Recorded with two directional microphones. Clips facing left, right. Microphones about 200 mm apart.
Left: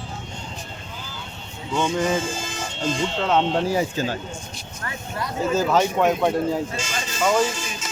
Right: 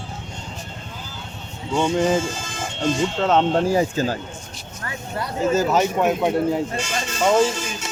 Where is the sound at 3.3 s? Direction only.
45° right (ahead or behind).